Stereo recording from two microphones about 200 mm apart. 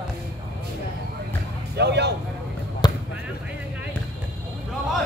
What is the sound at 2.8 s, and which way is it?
Basketball bounce, 20° left (ahead or behind).